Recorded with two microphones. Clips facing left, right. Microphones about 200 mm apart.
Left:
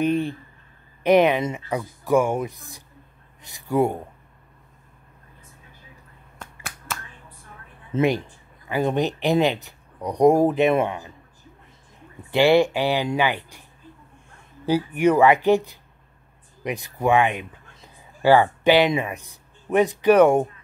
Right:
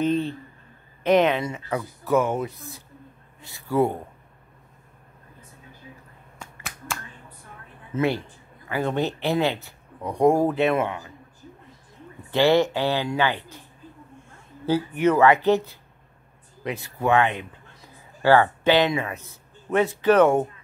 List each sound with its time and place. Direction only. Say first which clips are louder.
0.0 s speech: left 1 dB; 10° left (ahead or behind)
6.4 s finger snapping: even; centre (ahead or behind)
7.9 s speech: left 3 dB; 30° left (ahead or behind)
8.6 s speech: left 3 dB; 15° left (ahead or behind)
12.3 s speech: left 2 dB; 15° left (ahead or behind)
14.7 s speech: left 2 dB; 15° left (ahead or behind)